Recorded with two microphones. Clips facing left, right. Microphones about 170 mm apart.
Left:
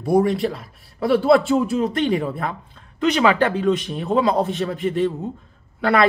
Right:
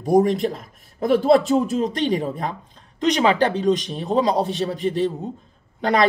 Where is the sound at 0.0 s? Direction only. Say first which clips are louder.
Right 1 dB; 45° right (ahead or behind).